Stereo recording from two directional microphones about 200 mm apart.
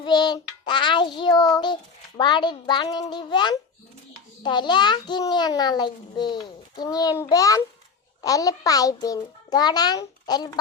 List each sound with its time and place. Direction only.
0.0 s child singing: 20° left (ahead or behind)
6.7 s a child's voice: 20° left (ahead or behind)
8.2 s child singing: 15° left (ahead or behind)